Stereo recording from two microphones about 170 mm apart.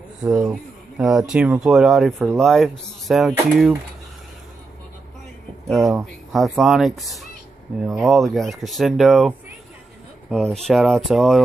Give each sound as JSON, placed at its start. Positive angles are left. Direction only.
{"t": 0.4, "sound": "speech", "side_deg": -5}
{"t": 5.7, "sound": "speech", "side_deg": 0}
{"t": 10.3, "sound": "speech", "side_deg": 5}